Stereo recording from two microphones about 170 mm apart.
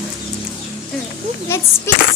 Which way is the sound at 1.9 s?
15° left (ahead or behind).